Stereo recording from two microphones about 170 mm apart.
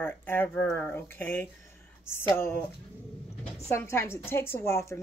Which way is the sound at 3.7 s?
15° left (ahead or behind).